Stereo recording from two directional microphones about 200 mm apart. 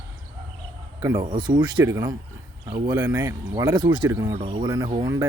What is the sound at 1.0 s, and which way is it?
Speech, 20° right (ahead or behind).